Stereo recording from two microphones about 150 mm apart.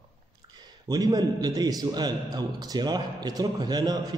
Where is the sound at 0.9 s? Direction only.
25° right (ahead or behind).